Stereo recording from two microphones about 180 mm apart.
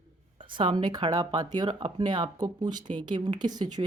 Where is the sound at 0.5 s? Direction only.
25° right (ahead or behind).